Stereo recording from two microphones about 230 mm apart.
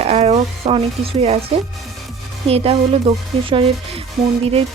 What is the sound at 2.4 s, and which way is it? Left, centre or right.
Speech, right.